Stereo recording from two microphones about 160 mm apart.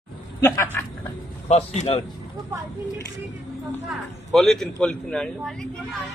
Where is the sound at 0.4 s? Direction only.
20° left (ahead or behind).